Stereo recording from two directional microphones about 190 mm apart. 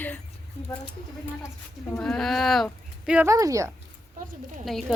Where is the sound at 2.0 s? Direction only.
Centre (ahead or behind).